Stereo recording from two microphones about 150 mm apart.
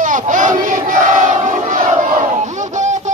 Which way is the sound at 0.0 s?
60° right (ahead or behind).